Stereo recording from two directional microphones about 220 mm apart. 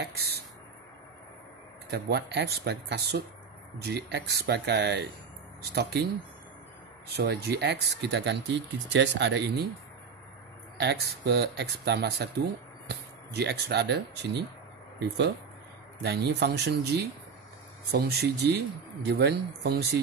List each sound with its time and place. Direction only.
0.0 s a sound: 45° right (ahead or behind)
1.9 s speech: 50° right (ahead or behind)
7.1 s speech: 45° right (ahead or behind)
10.8 s speech: 50° right (ahead or behind)